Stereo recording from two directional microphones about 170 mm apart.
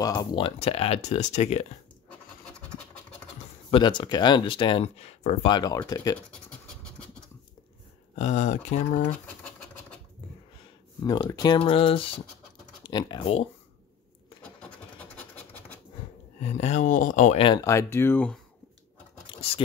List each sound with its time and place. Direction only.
0.0 s speech: 25° left (ahead or behind)
0.6 s speech: 35° left (ahead or behind)
3.7 s speech: 30° left (ahead or behind)
5.5 s speech: 25° left (ahead or behind)
8.2 s speech: 45° left (ahead or behind)
11.0 s speech: 25° left (ahead or behind)
14.4 s a sound: 10° left (ahead or behind)
16.3 s speech: 40° left (ahead or behind)
17.4 s speech: 30° left (ahead or behind)
17.6 s speech: 15° left (ahead or behind)
19.2 s a sound: 30° left (ahead or behind)